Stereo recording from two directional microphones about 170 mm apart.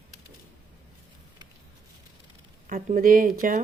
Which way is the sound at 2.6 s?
55° right (ahead or behind).